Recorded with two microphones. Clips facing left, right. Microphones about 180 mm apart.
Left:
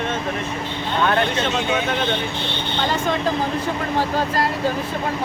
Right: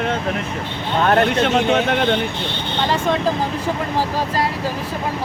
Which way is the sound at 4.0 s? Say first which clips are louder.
Left 2 dB; 5° right (ahead or behind).